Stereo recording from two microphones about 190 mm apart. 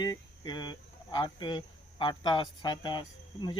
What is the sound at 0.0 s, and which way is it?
Speech, 20° left (ahead or behind).